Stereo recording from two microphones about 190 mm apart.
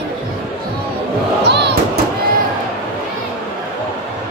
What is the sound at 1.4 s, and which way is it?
Crowd, 65° right (ahead or behind).